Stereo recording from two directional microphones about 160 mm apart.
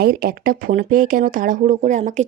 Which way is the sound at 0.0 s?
70° right (ahead or behind).